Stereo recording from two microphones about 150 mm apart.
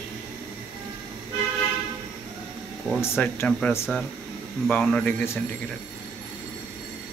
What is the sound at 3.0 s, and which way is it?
Speech, 15° left (ahead or behind).